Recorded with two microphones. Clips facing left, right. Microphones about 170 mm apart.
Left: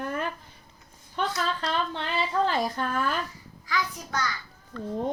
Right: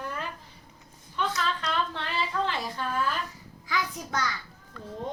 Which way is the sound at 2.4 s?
45° left (ahead or behind).